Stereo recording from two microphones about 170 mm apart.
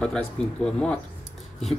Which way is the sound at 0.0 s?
5° left (ahead or behind).